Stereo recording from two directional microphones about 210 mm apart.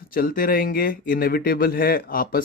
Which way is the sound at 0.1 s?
45° left (ahead or behind).